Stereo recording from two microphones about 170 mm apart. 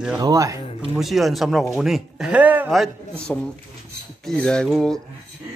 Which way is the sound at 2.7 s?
5° left (ahead or behind).